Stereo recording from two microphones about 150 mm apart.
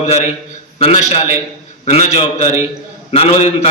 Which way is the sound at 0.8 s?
45° left (ahead or behind).